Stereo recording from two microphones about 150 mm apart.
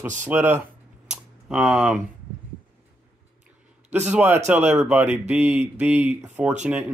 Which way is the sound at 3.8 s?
50° right (ahead or behind).